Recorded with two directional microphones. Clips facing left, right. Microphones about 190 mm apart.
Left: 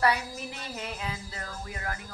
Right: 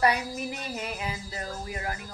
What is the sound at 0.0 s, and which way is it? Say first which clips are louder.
Music: right 2 dB; 15° right (ahead or behind).